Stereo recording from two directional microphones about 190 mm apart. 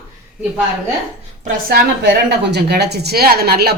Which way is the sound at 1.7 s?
60° right (ahead or behind).